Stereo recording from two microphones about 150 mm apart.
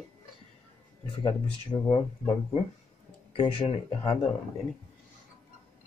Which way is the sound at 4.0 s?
35° left (ahead or behind).